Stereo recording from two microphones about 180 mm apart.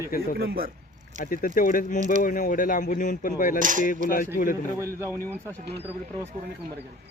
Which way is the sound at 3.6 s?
45° right (ahead or behind).